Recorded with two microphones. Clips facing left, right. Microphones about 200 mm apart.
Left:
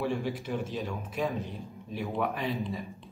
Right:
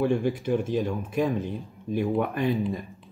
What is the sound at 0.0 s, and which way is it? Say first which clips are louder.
Speech: right 7 dB; 50° right (ahead or behind).